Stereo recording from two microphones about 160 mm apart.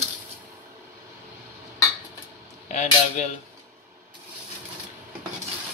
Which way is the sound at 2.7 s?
45° left (ahead or behind).